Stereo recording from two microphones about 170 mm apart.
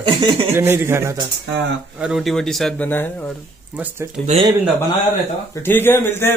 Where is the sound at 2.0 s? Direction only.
Centre (ahead or behind).